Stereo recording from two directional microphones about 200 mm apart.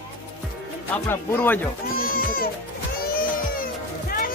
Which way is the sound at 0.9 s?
10° left (ahead or behind).